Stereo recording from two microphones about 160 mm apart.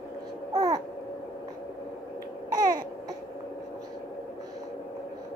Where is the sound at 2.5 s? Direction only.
25° right (ahead or behind).